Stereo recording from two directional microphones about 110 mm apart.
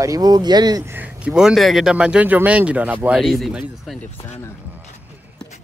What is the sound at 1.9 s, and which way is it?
Speech, 10° right (ahead or behind).